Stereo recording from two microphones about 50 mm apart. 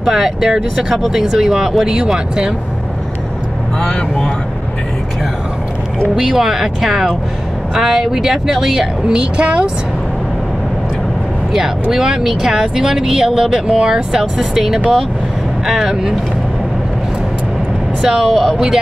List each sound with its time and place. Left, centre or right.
0.0 s speech: centre
3.8 s speech: centre
6.1 s speech: centre
9.1 s speech: centre
11.9 s speech: centre
18.0 s speech: centre